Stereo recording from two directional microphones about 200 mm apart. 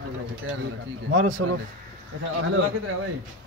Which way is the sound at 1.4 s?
90° right.